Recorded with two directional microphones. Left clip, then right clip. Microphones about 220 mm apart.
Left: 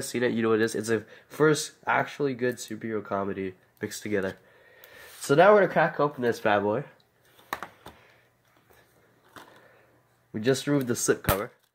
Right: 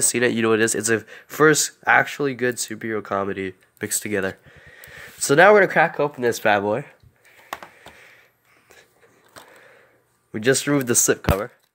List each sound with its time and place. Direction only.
0.1 s speech: 45° right (ahead or behind)
10.3 s speech: 45° right (ahead or behind)